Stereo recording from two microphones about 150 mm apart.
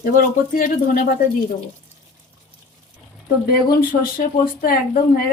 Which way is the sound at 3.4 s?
85° left.